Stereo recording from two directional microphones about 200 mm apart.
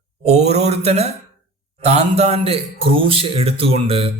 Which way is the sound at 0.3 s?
35° right (ahead or behind).